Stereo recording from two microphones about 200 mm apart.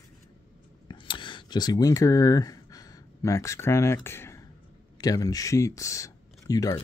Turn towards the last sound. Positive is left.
turn(degrees=20)  # may be behind; listen again after turning